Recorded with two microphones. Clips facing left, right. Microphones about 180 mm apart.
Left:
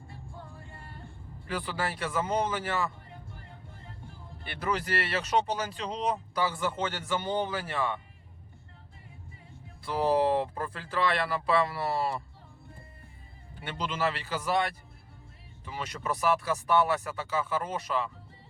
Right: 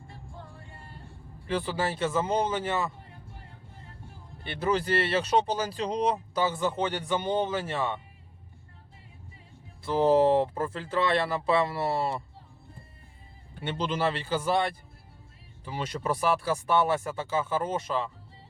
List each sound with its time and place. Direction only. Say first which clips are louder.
1.5 s speech: right 4 dB; 25° right (ahead or behind)
4.4 s speech: right 5 dB; 25° right (ahead or behind)
6.4 s speech: right 3 dB; 20° right (ahead or behind)
9.8 s speech: right 4 dB; 25° right (ahead or behind)
13.6 s speech: right 3 dB; 30° right (ahead or behind)